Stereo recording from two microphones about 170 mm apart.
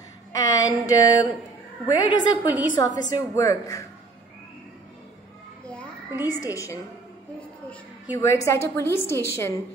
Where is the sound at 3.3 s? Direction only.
20° left (ahead or behind).